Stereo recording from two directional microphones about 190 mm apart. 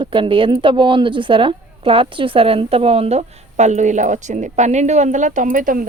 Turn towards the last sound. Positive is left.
turn(degrees=-45)  # may be behind; listen again after turning